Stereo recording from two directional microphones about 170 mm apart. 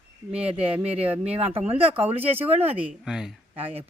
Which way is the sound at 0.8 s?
35° right (ahead or behind).